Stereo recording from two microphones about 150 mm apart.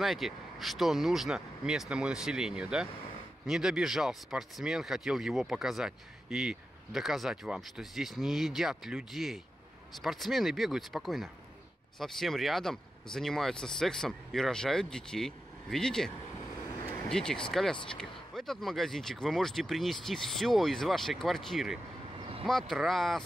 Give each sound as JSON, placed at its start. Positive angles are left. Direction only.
{"t": 0.0, "sound": "speech", "side_deg": 0}
{"t": 17.1, "sound": "speech", "side_deg": 5}
{"t": 22.2, "sound": "vehicle", "side_deg": -35}
{"t": 22.5, "sound": "speech", "side_deg": 0}